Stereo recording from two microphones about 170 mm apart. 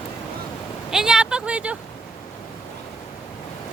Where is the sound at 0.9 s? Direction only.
5° right (ahead or behind).